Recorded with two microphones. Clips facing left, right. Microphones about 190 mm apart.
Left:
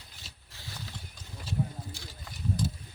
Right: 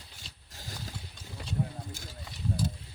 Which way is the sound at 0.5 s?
45° right (ahead or behind).